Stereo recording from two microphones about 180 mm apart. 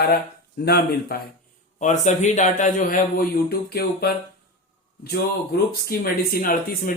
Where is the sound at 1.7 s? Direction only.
40° left (ahead or behind); by 4.1 s 60° left (ahead or behind).